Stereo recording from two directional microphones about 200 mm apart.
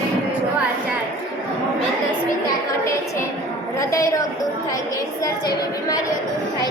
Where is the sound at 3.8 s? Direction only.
15° left (ahead or behind).